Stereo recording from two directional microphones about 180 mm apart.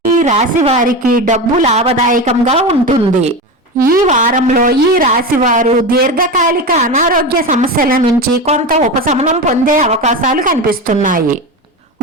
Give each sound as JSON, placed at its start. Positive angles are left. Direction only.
{"t": 0.2, "sound": "a woman's voice", "side_deg": -40}
{"t": 0.9, "sound": "a woman's voice", "side_deg": -50}
{"t": 8.4, "sound": "a woman's voice", "side_deg": -40}